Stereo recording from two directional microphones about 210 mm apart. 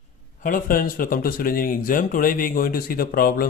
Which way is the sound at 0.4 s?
40° left (ahead or behind).